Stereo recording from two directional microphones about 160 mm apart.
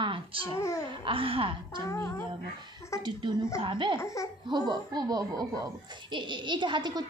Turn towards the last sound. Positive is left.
turn(degrees=-30)  # may be behind; listen again after turning